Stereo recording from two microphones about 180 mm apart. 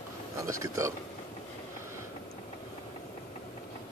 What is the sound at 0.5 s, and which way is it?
Speech, 15° right (ahead or behind).